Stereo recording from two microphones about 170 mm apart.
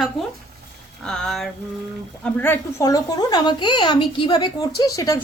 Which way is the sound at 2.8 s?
20° left (ahead or behind).